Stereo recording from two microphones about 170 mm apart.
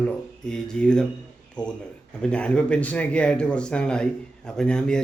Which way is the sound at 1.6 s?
25° left (ahead or behind).